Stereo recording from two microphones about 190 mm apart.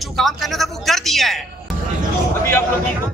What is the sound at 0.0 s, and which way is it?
Speech, centre (ahead or behind).